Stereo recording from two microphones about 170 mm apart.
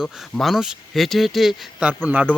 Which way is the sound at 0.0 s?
Centre (ahead or behind).